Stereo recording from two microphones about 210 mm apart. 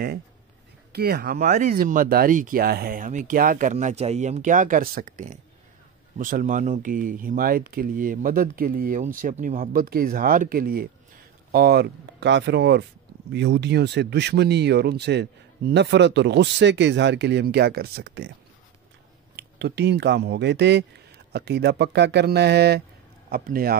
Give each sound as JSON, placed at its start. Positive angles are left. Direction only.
{"t": 0.9, "sound": "speech", "side_deg": -50}
{"t": 19.3, "sound": "speech", "side_deg": -50}